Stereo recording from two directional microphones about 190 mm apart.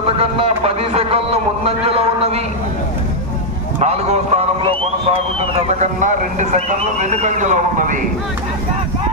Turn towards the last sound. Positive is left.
turn(degrees=-40)  # may be behind; listen again after turning